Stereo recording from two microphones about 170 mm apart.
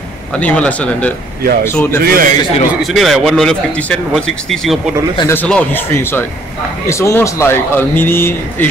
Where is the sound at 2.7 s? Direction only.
Centre (ahead or behind).